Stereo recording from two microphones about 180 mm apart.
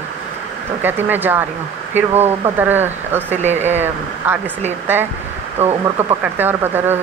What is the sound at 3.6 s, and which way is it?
Speech, 10° right (ahead or behind).